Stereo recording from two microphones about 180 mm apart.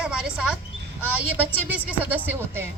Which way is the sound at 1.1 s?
10° right (ahead or behind).